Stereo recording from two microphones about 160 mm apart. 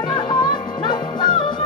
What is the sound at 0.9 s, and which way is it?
Music, 30° left (ahead or behind).